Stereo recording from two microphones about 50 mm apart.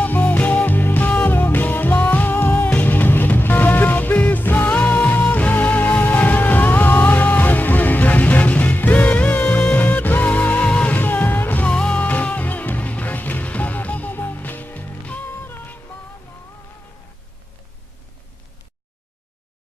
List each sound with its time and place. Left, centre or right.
0.0 s music: left
11.0 s music: left
11.6 s music: centre; by 14.9 s left
15.2 s music: left